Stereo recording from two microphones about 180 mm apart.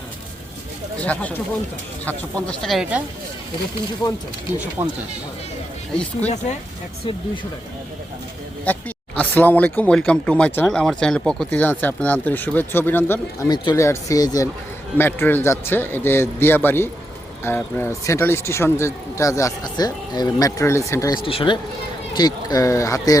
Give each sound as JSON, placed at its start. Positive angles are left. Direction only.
{"t": 0.9, "sound": "speech", "side_deg": 5}
{"t": 4.8, "sound": "speech", "side_deg": -20}
{"t": 6.1, "sound": "speech", "side_deg": 40}
{"t": 8.6, "sound": "speech", "side_deg": 10}
{"t": 21.2, "sound": "speech", "side_deg": 30}